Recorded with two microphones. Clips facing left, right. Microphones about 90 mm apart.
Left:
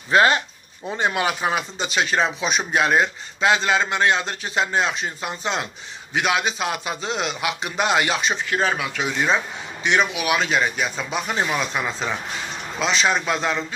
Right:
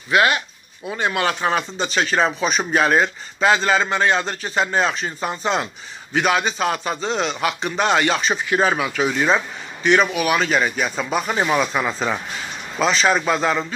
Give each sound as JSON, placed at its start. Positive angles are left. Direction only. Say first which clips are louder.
{"t": 0.1, "sound": "speech", "louder": "left 1 dB", "side_deg": 30}
{"t": 0.8, "sound": "speech", "louder": "right 1 dB", "side_deg": 20}
{"t": 1.4, "sound": "speech", "louder": "right 3 dB", "side_deg": 5}